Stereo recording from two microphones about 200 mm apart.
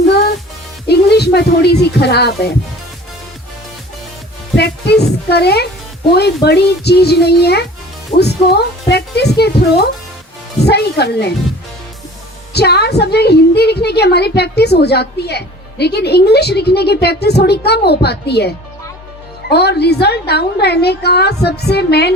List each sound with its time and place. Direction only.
0.9 s speech: 55° left (ahead or behind)
4.5 s a woman's voice: 55° left (ahead or behind)
8.1 s speech: 25° left (ahead or behind)
8.9 s a woman's voice: 55° left (ahead or behind)
12.5 s a woman's voice: 55° left (ahead or behind)